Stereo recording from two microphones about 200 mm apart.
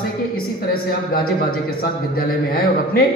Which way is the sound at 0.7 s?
45° left (ahead or behind).